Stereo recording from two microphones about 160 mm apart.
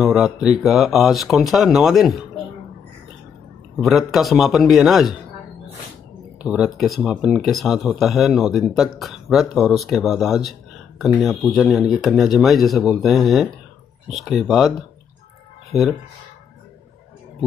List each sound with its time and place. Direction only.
0.0 s speech: 5° right (ahead or behind)
3.7 s speech: centre (ahead or behind)
6.4 s speech: 5° right (ahead or behind)
15.7 s speech: 20° left (ahead or behind)